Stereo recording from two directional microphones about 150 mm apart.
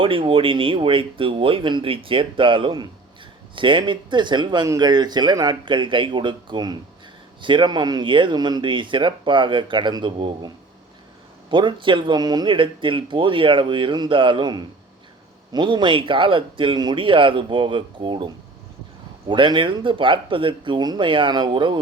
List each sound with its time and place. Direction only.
0.0 s speech: 35° right (ahead or behind)
11.5 s speech: 35° right (ahead or behind)
19.3 s speech: 30° right (ahead or behind)